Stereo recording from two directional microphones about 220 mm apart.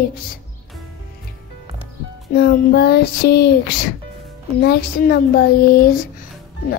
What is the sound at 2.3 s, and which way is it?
Child singing, 50° left (ahead or behind).